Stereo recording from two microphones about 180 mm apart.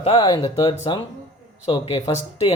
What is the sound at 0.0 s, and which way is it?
Speech, 30° left (ahead or behind).